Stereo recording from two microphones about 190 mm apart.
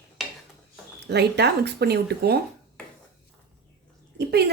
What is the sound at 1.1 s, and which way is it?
Speech, 60° right (ahead or behind).